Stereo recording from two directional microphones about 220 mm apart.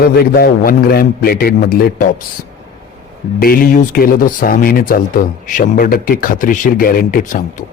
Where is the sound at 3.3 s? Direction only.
40° left (ahead or behind).